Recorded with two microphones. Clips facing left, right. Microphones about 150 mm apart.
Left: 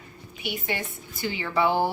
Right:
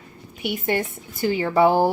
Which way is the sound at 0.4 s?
50° right (ahead or behind).